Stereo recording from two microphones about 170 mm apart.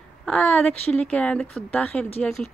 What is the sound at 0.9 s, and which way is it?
Speech, 5° left (ahead or behind).